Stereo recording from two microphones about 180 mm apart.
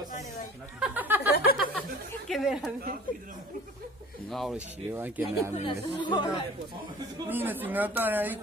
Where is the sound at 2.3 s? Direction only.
Centre (ahead or behind).